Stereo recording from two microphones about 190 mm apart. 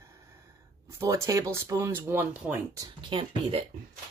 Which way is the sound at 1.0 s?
15° right (ahead or behind).